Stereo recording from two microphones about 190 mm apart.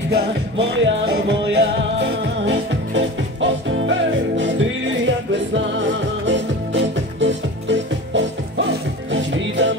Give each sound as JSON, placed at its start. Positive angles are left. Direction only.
{"t": 0.1, "sound": "music", "side_deg": -70}